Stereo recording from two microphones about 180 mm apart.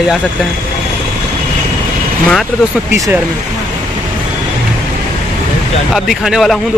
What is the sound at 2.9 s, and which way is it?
Speech, 15° right (ahead or behind).